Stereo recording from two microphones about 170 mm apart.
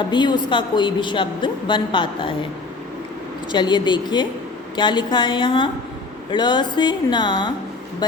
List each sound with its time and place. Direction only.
0.0 s a woman's voice: 25° left (ahead or behind)
3.5 s a woman's voice: 25° left (ahead or behind)